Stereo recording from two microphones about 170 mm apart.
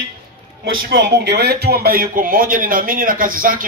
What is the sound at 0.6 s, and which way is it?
A man's voice, 80° right.